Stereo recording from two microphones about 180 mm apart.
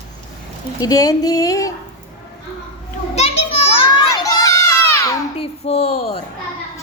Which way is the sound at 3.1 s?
35° left (ahead or behind).